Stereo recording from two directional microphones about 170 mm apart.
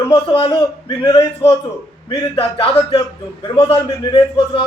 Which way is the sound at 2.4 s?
35° left (ahead or behind).